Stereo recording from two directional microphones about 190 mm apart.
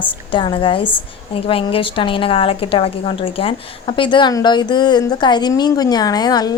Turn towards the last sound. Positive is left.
turn(degrees=20)  # may be behind; listen again after turning